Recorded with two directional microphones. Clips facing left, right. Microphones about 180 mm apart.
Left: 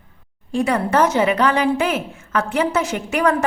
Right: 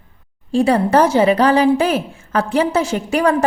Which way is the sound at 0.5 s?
30° right (ahead or behind).